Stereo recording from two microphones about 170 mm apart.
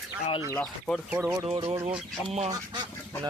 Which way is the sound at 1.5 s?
35° right (ahead or behind).